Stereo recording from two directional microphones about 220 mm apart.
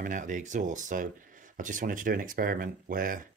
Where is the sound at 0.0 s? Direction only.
35° right (ahead or behind).